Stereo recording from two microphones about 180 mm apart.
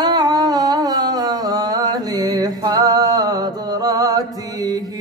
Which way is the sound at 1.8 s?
20° right (ahead or behind).